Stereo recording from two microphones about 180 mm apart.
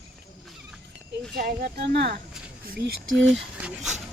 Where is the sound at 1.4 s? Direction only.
55° right (ahead or behind).